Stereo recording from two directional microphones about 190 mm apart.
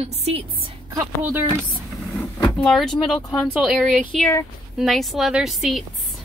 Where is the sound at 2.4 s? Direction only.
5° left (ahead or behind).